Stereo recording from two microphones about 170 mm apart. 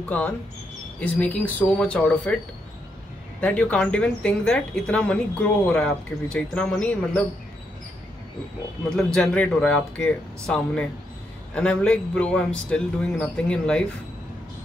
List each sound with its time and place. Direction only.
0.1 s speech: 10° left (ahead or behind)
8.9 s a man's voice: centre (ahead or behind)